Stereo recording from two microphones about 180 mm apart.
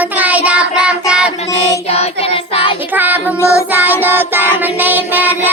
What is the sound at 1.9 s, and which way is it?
Child singing, 35° left (ahead or behind).